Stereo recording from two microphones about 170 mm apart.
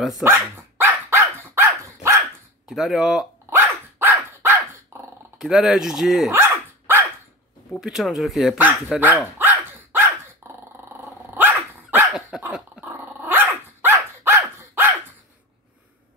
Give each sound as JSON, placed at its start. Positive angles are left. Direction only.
{"t": 0.2, "sound": "dog", "side_deg": -15}
{"t": 2.7, "sound": "speech", "side_deg": 0}
{"t": 4.0, "sound": "dog", "side_deg": -15}
{"t": 5.4, "sound": "speech", "side_deg": 0}
{"t": 6.3, "sound": "dog", "side_deg": -15}
{"t": 7.7, "sound": "speech", "side_deg": 0}
{"t": 8.9, "sound": "dog", "side_deg": -10}